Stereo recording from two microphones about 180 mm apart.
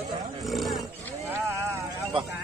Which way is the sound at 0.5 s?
Centre (ahead or behind).